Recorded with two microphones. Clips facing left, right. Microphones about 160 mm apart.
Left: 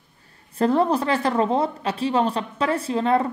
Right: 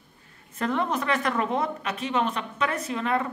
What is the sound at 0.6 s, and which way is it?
Speech, 35° left (ahead or behind).